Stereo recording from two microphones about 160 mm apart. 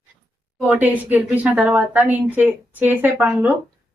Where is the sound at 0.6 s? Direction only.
10° right (ahead or behind).